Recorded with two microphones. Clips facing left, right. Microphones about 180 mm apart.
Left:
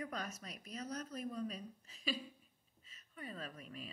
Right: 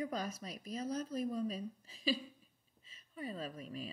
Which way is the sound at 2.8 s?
30° right (ahead or behind).